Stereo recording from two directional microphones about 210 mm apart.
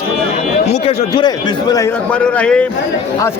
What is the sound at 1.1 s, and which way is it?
Speech, 20° left (ahead or behind).